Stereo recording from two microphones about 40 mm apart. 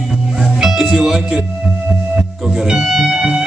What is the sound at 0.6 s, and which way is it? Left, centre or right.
Music, centre.